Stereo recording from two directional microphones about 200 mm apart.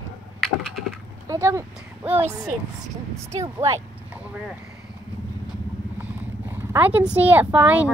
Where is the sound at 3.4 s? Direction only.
15° right (ahead or behind).